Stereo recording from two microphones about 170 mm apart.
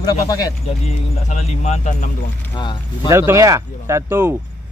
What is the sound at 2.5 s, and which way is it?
Speech, 25° left (ahead or behind).